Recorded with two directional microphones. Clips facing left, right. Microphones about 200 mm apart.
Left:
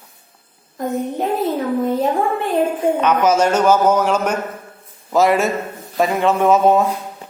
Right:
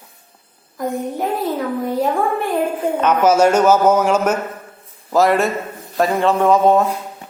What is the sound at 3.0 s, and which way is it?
A man's voice, 10° right (ahead or behind).